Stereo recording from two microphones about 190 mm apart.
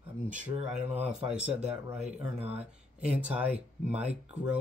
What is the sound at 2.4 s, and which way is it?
Speech, 5° right (ahead or behind).